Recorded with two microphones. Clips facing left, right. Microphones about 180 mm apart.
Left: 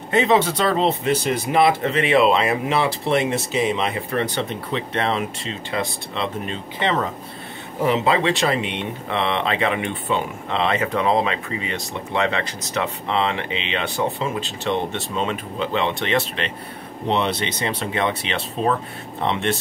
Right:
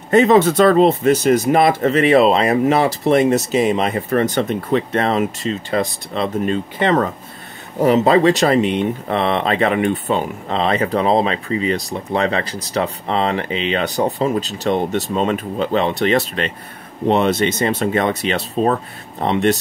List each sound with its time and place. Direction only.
0.1 s speech: 45° right (ahead or behind)